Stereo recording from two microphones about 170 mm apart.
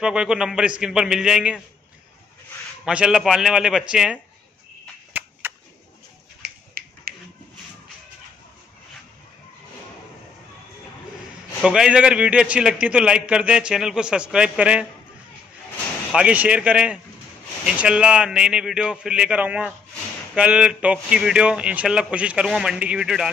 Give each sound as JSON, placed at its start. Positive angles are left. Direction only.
{"t": 0.0, "sound": "a man's voice", "side_deg": -5}
{"t": 2.8, "sound": "a man's voice", "side_deg": -5}
{"t": 5.1, "sound": "a sound", "side_deg": -10}
{"t": 6.4, "sound": "finger snapping", "side_deg": -60}
{"t": 11.6, "sound": "a man's voice", "side_deg": -5}
{"t": 16.1, "sound": "a man's voice", "side_deg": -5}